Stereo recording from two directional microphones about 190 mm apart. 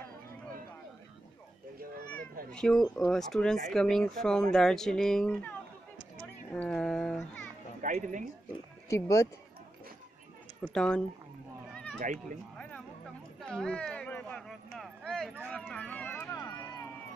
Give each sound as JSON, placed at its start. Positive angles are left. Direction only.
{"t": 2.5, "sound": "speech", "side_deg": 5}
{"t": 6.5, "sound": "a sound", "side_deg": 5}
{"t": 7.8, "sound": "speech", "side_deg": -40}
{"t": 8.8, "sound": "speech", "side_deg": 15}
{"t": 10.7, "sound": "speech", "side_deg": 5}
{"t": 11.7, "sound": "cat", "side_deg": 5}
{"t": 12.0, "sound": "speech", "side_deg": -40}
{"t": 13.4, "sound": "a sound", "side_deg": 5}